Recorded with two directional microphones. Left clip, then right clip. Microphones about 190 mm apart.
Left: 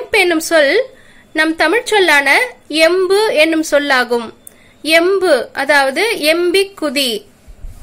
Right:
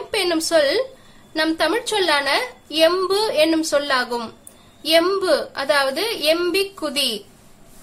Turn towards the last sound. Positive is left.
turn(degrees=20)  # may be behind; listen again after turning